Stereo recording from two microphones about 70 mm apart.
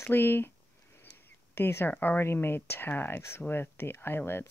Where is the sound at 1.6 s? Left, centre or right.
Left.